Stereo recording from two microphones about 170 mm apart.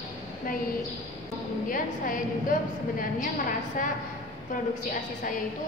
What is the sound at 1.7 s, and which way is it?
Speech, 55° left (ahead or behind).